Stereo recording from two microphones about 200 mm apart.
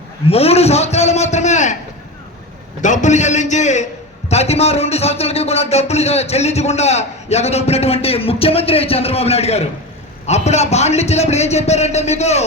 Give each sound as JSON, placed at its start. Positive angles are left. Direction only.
{"t": 0.3, "sound": "speech", "side_deg": 30}
{"t": 2.8, "sound": "speech", "side_deg": 35}